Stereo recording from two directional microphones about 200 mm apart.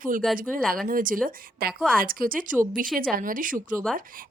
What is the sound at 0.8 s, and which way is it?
A woman's voice, 45° right (ahead or behind).